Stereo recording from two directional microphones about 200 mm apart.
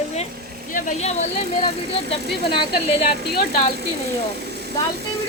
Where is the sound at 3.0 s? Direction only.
50° left (ahead or behind).